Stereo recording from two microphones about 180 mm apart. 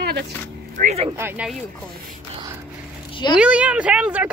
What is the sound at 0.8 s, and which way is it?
Speech, 40° right (ahead or behind).